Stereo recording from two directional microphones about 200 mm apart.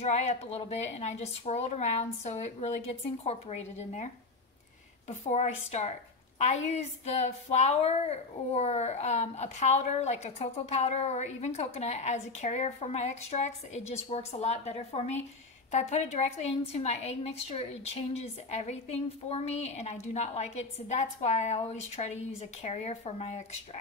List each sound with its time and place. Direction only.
0.0 s a woman's voice: 35° left (ahead or behind)